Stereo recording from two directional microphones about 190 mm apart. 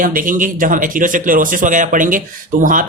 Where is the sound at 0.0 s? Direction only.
45° right (ahead or behind).